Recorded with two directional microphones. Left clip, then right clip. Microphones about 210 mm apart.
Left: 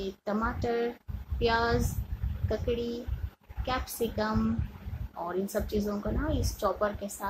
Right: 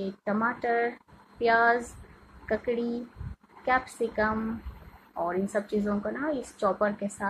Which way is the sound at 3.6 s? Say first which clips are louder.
Right 5 dB; 5° left (ahead or behind).